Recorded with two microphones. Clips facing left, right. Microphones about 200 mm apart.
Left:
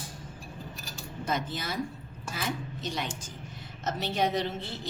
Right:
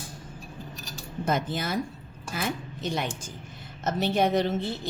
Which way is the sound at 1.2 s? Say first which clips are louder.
Right 5 dB; 50° right (ahead or behind).